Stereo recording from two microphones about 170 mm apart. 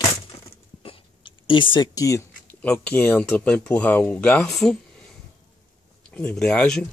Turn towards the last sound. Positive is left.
turn(degrees=5)  # may be behind; listen again after turning